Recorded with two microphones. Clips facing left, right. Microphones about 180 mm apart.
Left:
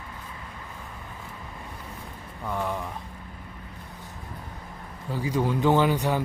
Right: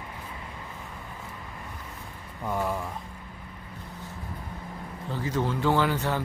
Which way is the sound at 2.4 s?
10° right (ahead or behind).